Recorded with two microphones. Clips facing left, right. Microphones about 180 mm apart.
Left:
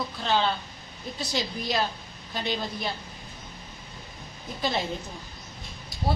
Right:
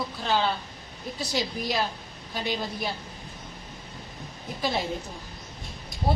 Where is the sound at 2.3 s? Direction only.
10° right (ahead or behind).